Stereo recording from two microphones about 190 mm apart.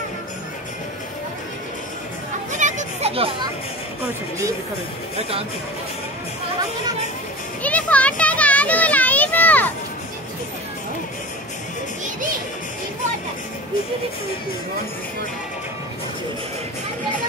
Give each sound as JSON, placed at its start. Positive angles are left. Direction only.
{"t": 2.6, "sound": "children playing", "side_deg": -35}
{"t": 7.6, "sound": "a child's voice", "side_deg": 5}